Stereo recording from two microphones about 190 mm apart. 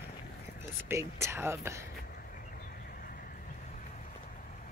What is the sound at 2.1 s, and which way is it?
Horse, 50° left (ahead or behind).